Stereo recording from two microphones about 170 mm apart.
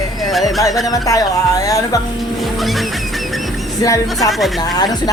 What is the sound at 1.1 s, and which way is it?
Speech, 20° left (ahead or behind).